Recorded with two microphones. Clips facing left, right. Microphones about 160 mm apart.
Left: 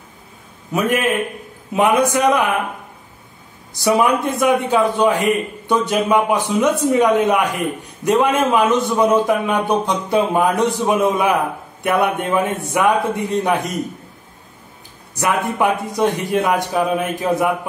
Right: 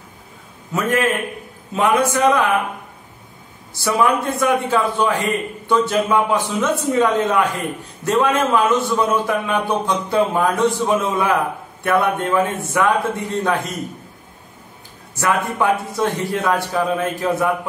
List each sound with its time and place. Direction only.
0.7 s a man's voice: 15° left (ahead or behind)
3.7 s a man's voice: 15° left (ahead or behind)
15.1 s a man's voice: 15° left (ahead or behind)